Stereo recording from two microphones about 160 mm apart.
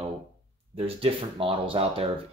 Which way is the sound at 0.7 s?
35° right (ahead or behind).